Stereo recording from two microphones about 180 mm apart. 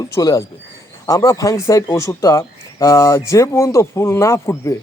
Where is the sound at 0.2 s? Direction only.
20° left (ahead or behind).